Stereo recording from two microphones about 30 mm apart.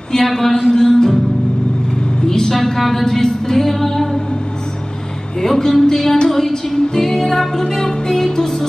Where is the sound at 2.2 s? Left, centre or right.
Centre.